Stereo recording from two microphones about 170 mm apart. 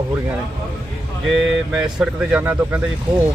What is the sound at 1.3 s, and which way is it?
Speech, 5° right (ahead or behind).